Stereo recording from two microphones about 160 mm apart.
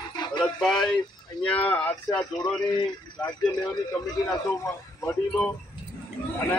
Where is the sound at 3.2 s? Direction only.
25° left (ahead or behind).